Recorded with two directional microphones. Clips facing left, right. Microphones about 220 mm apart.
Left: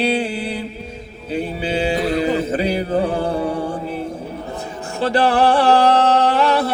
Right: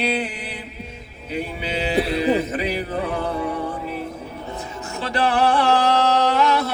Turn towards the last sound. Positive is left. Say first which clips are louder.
# left 3 dB
turn(degrees=30)  # may be behind; listen again after turning